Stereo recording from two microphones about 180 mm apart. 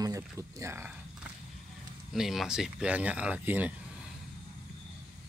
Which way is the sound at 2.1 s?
Centre (ahead or behind).